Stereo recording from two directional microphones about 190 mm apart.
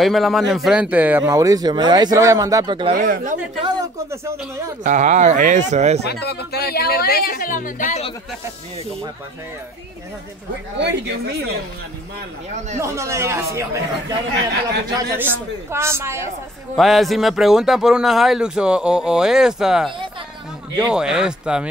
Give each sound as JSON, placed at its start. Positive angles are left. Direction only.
{"t": 0.0, "sound": "speech", "side_deg": 0}
{"t": 2.9, "sound": "speech", "side_deg": -45}
{"t": 4.8, "sound": "speech", "side_deg": -40}
{"t": 6.0, "sound": "speech", "side_deg": 55}
{"t": 10.8, "sound": "speech", "side_deg": -65}
{"t": 12.8, "sound": "speech", "side_deg": -15}
{"t": 16.7, "sound": "speech", "side_deg": 0}
{"t": 20.9, "sound": "speech", "side_deg": -5}